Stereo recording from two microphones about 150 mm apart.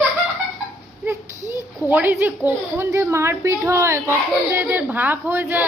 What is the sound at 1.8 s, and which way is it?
Speech, 10° right (ahead or behind).